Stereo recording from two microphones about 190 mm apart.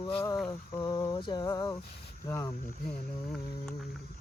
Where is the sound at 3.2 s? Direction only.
5° left (ahead or behind).